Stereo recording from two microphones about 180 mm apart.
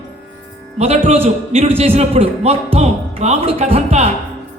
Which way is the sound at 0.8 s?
35° right (ahead or behind).